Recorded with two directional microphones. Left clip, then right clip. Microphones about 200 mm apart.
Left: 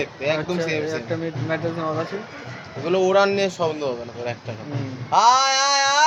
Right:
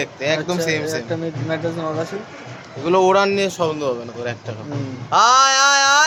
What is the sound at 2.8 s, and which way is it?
A man's voice, 50° right (ahead or behind).